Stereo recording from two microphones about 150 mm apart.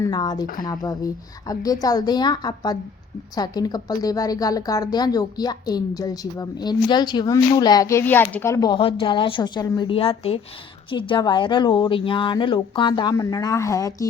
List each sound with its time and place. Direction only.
0.0 s a woman's voice: 25° left (ahead or behind)
8.8 s speech: 35° left (ahead or behind)